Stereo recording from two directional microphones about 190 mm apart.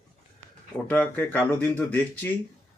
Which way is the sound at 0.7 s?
10° left (ahead or behind).